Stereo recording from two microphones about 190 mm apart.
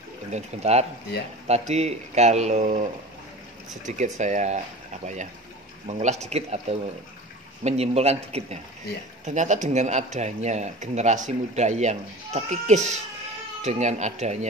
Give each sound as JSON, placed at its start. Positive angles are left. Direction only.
{"t": 0.3, "sound": "speech", "side_deg": -35}
{"t": 3.8, "sound": "speech", "side_deg": -40}
{"t": 7.6, "sound": "speech", "side_deg": -35}